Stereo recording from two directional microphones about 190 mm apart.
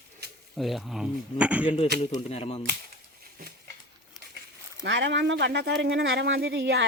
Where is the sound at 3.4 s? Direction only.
55° right (ahead or behind).